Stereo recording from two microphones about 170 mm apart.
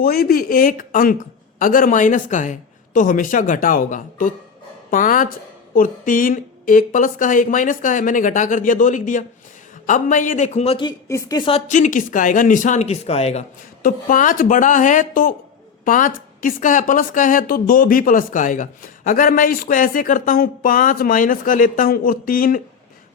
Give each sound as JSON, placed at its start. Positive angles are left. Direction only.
{"t": 0.0, "sound": "speech", "side_deg": 60}
{"t": 11.1, "sound": "speech", "side_deg": 20}
{"t": 11.7, "sound": "speech", "side_deg": 50}
{"t": 13.8, "sound": "a woman's voice", "side_deg": 50}